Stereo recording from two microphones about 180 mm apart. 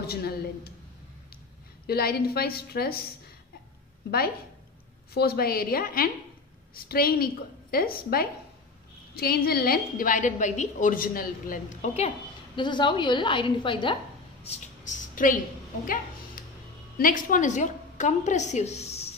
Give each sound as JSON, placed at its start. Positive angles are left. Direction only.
{"t": 0.0, "sound": "speech", "side_deg": 60}
{"t": 1.9, "sound": "a woman's voice", "side_deg": 60}
{"t": 5.1, "sound": "a woman's voice", "side_deg": 60}
{"t": 12.5, "sound": "a woman's voice", "side_deg": 25}
{"t": 14.4, "sound": "a sound", "side_deg": 40}
{"t": 17.0, "sound": "a woman's voice", "side_deg": 50}